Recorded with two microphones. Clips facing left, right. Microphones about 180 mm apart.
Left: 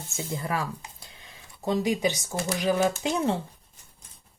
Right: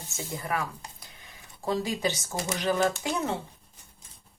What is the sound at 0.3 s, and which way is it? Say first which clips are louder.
Speech: left 1 dB; 30° left (ahead or behind).